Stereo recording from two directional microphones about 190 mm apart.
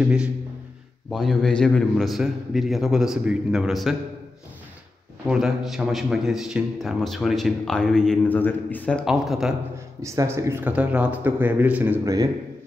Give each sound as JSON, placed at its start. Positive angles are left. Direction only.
{"t": 1.1, "sound": "speech", "side_deg": 0}
{"t": 5.2, "sound": "speech", "side_deg": 0}
{"t": 10.0, "sound": "a man's voice", "side_deg": -15}